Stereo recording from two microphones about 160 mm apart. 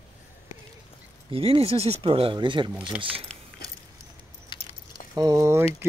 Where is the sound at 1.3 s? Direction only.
35° right (ahead or behind).